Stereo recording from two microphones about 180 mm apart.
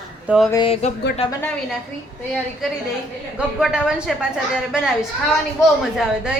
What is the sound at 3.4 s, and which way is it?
A child's voice, 5° right (ahead or behind).